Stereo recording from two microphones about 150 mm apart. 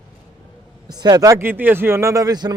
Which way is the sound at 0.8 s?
30° right (ahead or behind).